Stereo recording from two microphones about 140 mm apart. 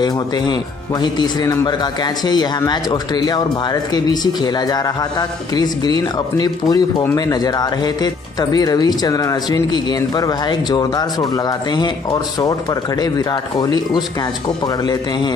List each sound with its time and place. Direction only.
1.0 s a man's voice: 30° left (ahead or behind)